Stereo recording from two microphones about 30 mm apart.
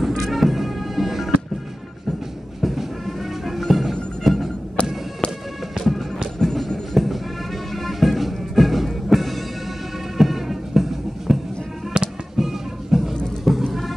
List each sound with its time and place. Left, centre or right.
0.0 s music: centre
2.6 s music: centre
4.8 s music: left
6.4 s music: centre
11.9 s fireworks: right
12.4 s music: centre
13.4 s vehicle: centre